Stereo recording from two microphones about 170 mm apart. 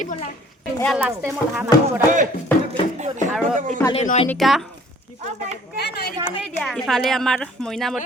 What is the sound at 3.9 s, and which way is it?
Speech, 40° left (ahead or behind).